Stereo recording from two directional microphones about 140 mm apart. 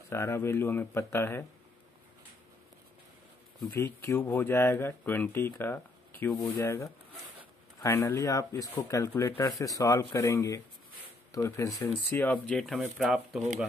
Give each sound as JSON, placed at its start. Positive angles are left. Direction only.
{"t": 0.1, "sound": "speech", "side_deg": 20}
{"t": 3.7, "sound": "speech", "side_deg": 15}
{"t": 12.1, "sound": "speech", "side_deg": 10}